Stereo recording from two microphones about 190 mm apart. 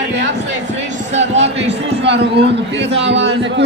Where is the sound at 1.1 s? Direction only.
35° right (ahead or behind).